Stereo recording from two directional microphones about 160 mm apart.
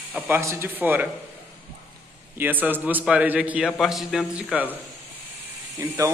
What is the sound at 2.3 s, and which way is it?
A man's voice, 10° right (ahead or behind).